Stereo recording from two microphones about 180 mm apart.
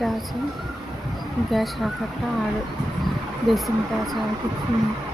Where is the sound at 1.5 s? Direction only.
Centre (ahead or behind).